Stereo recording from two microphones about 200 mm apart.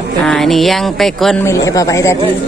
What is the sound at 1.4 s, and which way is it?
Speech, 15° left (ahead or behind).